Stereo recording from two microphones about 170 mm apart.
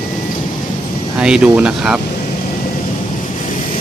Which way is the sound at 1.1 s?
5° right (ahead or behind).